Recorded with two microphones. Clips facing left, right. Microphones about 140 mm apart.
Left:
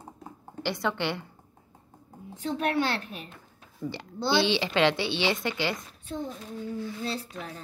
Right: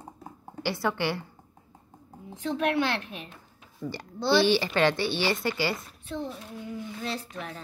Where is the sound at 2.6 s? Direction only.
40° left (ahead or behind).